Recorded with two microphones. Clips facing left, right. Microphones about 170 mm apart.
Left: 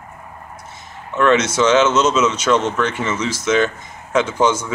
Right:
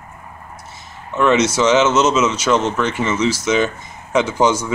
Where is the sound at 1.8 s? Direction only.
20° right (ahead or behind).